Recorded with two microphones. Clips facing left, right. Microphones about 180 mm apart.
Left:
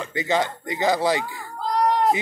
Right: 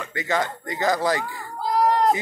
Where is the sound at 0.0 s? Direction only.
30° left (ahead or behind).